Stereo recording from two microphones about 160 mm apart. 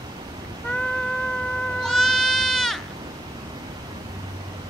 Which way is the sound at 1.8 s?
Centre (ahead or behind).